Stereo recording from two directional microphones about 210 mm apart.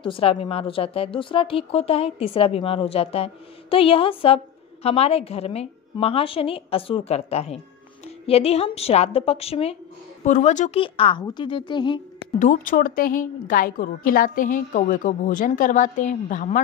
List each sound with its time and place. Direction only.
0.0 s a woman's voice: 25° left (ahead or behind)
12.4 s a woman's voice: 40° left (ahead or behind)